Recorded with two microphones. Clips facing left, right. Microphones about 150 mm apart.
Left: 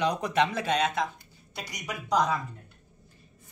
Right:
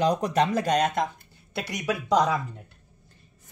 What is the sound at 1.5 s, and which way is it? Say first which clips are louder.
Speech: right 9 dB; 65° right (ahead or behind).